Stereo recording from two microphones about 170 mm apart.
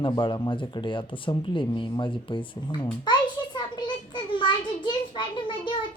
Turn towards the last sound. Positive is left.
turn(degrees=30)  # may be behind; listen again after turning